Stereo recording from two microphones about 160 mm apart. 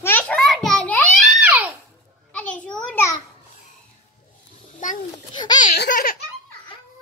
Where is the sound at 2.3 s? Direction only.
10° left (ahead or behind).